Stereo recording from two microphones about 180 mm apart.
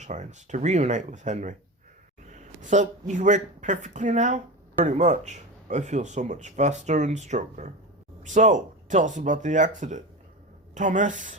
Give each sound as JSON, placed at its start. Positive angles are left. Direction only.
{"t": 0.0, "sound": "speech", "side_deg": -40}